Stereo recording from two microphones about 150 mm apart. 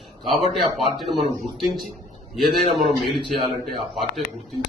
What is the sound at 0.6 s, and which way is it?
Speech, centre (ahead or behind).